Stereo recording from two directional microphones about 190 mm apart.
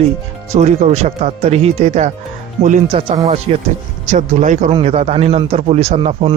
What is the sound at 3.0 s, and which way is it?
Speech, 25° right (ahead or behind).